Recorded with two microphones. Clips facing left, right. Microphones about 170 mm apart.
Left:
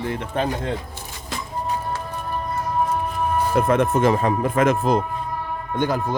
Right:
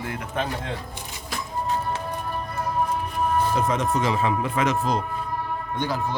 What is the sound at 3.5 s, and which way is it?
Speech, 55° left (ahead or behind).